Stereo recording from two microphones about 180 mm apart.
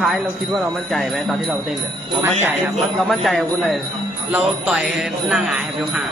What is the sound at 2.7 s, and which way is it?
Jingle bell, centre (ahead or behind).